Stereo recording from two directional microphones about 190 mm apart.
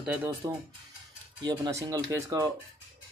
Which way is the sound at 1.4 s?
20° right (ahead or behind).